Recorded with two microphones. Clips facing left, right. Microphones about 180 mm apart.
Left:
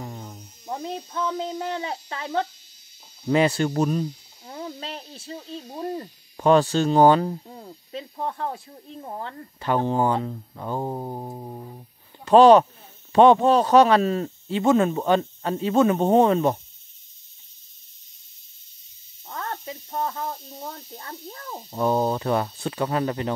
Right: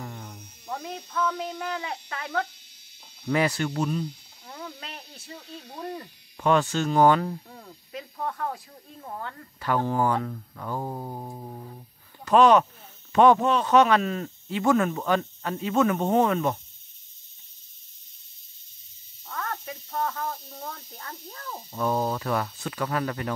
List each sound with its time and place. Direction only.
0.0 s electric shaver: 20° left (ahead or behind)
0.7 s speech: 30° left (ahead or behind)
12.3 s speech: 30° left (ahead or behind)
19.2 s speech: 30° left (ahead or behind)